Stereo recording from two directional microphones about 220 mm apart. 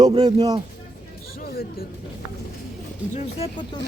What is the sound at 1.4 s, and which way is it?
Speech, 45° left (ahead or behind).